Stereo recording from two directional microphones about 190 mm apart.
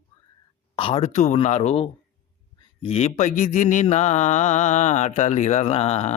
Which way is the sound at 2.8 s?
30° left (ahead or behind).